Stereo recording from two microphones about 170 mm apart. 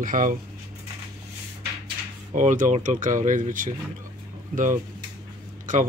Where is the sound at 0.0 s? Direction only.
55° right (ahead or behind).